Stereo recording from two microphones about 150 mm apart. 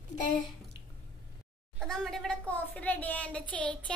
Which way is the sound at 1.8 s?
5° left (ahead or behind).